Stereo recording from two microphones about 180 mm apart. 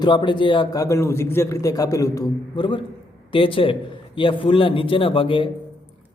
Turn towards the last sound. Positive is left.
turn(degrees=30)  # may be behind; listen again after turning